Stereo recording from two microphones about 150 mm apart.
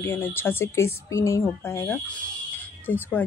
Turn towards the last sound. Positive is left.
turn(degrees=15)  # may be behind; listen again after turning